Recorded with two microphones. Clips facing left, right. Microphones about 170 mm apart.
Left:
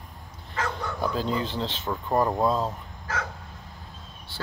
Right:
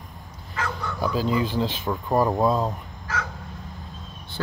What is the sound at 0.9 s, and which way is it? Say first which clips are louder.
Speech: right 4 dB; 5° right (ahead or behind).